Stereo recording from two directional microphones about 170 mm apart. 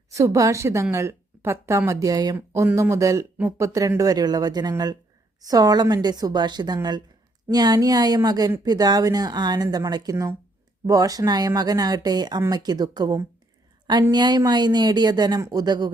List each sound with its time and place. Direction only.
0.1 s a woman's voice: 20° right (ahead or behind)